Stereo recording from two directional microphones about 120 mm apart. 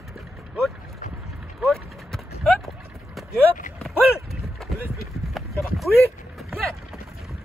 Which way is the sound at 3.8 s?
Centre (ahead or behind).